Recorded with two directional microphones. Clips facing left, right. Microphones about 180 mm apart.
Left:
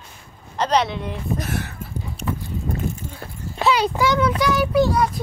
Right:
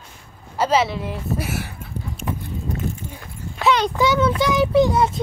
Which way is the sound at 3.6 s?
5° left (ahead or behind).